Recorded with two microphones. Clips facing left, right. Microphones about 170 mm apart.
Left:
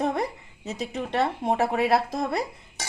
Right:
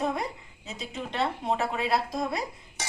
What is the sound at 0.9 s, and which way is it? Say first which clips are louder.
Speech: left 3 dB; 55° left (ahead or behind).